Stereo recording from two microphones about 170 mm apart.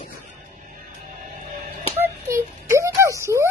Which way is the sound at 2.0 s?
15° right (ahead or behind).